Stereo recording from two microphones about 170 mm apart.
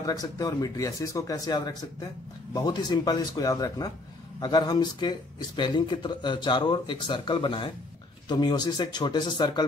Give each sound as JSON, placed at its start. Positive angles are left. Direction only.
{"t": 0.0, "sound": "speech", "side_deg": 20}